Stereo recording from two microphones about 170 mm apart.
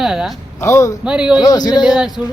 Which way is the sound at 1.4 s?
25° left (ahead or behind).